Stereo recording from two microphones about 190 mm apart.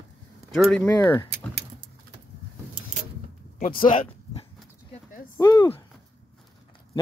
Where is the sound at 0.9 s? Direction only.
20° left (ahead or behind).